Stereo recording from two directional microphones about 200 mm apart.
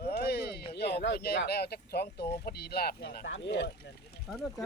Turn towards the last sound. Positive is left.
turn(degrees=0)  # may be behind; listen again after turning